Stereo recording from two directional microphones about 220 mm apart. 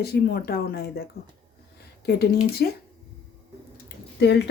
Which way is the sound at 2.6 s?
45° left (ahead or behind).